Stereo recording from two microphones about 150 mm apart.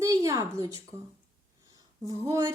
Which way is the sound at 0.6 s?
20° right (ahead or behind).